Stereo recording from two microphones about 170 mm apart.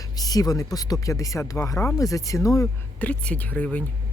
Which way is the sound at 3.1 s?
5° left (ahead or behind).